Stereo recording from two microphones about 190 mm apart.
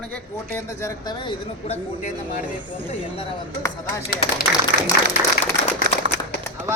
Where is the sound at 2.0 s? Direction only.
45° left (ahead or behind).